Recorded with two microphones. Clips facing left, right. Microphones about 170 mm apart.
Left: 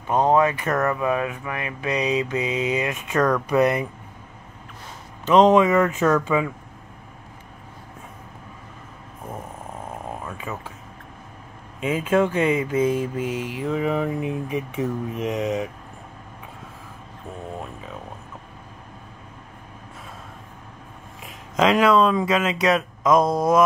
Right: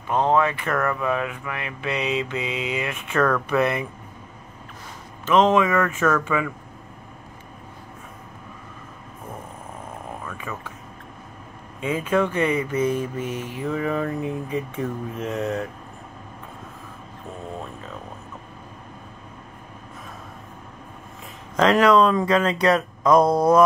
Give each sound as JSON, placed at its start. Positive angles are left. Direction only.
{"t": 0.1, "sound": "speech", "side_deg": 15}
{"t": 1.8, "sound": "mantra", "side_deg": 40}
{"t": 2.8, "sound": "speech", "side_deg": 15}
{"t": 5.2, "sound": "speech", "side_deg": 20}
{"t": 10.2, "sound": "a sound", "side_deg": 20}
{"t": 11.8, "sound": "speech", "side_deg": 20}
{"t": 21.5, "sound": "speech", "side_deg": 5}